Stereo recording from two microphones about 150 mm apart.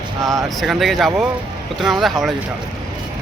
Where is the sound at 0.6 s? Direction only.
Centre (ahead or behind).